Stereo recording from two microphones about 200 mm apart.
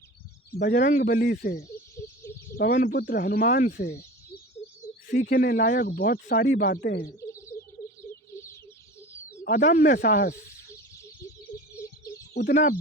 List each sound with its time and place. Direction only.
0.8 s speech: 40° left (ahead or behind)
1.6 s a sound: 15° left (ahead or behind)
2.6 s speech: 50° left (ahead or behind)
5.0 s speech: 45° left (ahead or behind)
7.2 s bird: 15° left (ahead or behind)
9.0 s bird: 15° left (ahead or behind)
9.4 s speech: 40° left (ahead or behind)
10.7 s bird: 15° left (ahead or behind)
12.3 s speech: 55° left (ahead or behind)